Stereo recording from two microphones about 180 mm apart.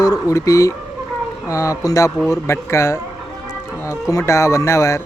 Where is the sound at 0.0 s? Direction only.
20° left (ahead or behind).